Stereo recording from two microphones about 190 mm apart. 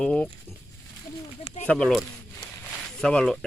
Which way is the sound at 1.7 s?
5° left (ahead or behind).